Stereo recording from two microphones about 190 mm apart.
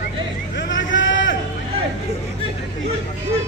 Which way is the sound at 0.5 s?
75° left (ahead or behind).